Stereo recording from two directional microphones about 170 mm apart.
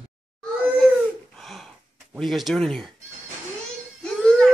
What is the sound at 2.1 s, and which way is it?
Speech, centre (ahead or behind).